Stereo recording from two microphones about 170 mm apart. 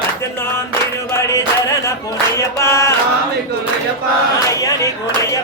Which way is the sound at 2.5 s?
15° left (ahead or behind).